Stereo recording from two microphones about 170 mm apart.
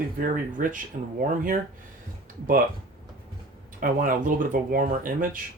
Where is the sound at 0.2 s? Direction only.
50° right (ahead or behind).